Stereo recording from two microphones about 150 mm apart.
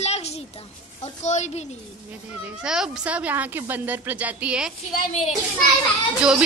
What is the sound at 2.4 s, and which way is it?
Speech, 5° right (ahead or behind).